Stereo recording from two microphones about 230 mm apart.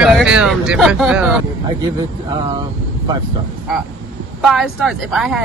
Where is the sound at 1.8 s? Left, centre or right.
Centre.